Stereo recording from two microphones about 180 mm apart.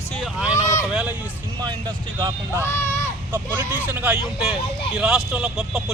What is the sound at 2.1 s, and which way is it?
Speech, 25° right (ahead or behind).